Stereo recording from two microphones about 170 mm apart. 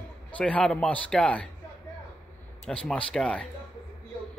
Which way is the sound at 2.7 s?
5° left (ahead or behind).